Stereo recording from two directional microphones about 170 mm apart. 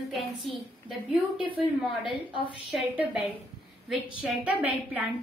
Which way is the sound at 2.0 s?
30° left (ahead or behind).